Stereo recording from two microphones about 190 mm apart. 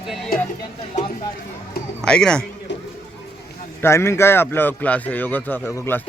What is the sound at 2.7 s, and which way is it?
Music, 70° left (ahead or behind).